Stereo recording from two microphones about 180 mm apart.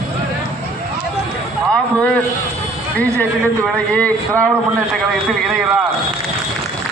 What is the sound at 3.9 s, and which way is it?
Speech, 5° left (ahead or behind).